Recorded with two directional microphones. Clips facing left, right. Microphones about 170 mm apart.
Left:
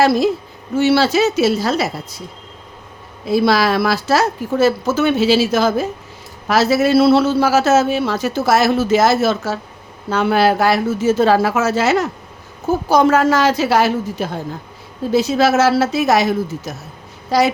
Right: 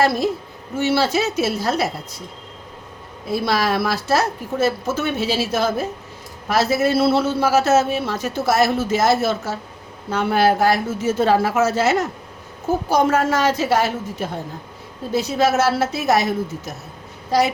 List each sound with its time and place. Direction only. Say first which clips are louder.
0.0 s a man's voice: left 4 dB; 90° left
3.2 s a man's voice: left 6 dB; 90° left
15.1 s a man's voice: left 4 dB; 90° left